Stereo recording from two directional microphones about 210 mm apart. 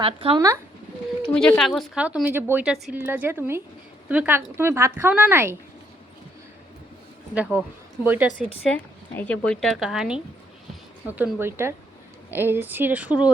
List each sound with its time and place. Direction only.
0.0 s speech: 25° right (ahead or behind)
1.3 s a woman's voice: 5° left (ahead or behind); by 5.5 s 10° right (ahead or behind)
8.0 s a woman's voice: 10° right (ahead or behind)
8.3 s a woman's voice: 20° left (ahead or behind)
8.7 s a woman's voice: 5° left (ahead or behind)